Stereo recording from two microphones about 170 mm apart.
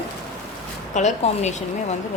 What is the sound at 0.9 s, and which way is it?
A woman's voice, 45° left (ahead or behind).